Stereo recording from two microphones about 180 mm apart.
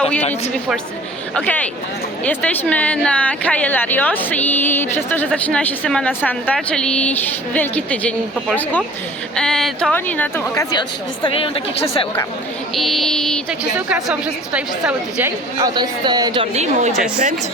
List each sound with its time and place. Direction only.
0.2 s speech: 35° left (ahead or behind)
1.4 s a woman's voice: 5° left (ahead or behind)
10.7 s a woman's voice: 25° left (ahead or behind)
12.7 s a sound: centre (ahead or behind)
13.7 s a woman's voice: 10° right (ahead or behind)
15.5 s a woman's voice: 25° right (ahead or behind); by 17.3 s 45° right (ahead or behind)